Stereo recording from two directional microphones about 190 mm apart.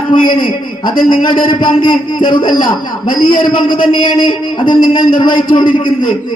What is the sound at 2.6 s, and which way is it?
Speech, 45° left (ahead or behind).